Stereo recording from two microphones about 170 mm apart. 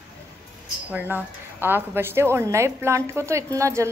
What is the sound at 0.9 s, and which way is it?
Speech, 10° right (ahead or behind).